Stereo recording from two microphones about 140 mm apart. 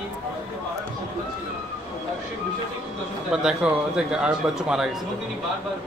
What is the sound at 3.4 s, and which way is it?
Speech, 5° right (ahead or behind).